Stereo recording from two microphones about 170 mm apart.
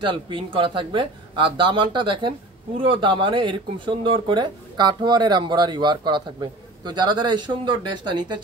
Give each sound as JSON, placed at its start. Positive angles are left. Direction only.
{"t": 0.0, "sound": "speech", "side_deg": -30}